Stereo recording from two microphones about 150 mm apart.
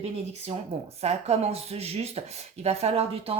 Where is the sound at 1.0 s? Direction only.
45° right (ahead or behind).